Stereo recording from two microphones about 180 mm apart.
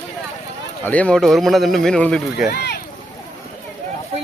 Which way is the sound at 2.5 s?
65° left (ahead or behind).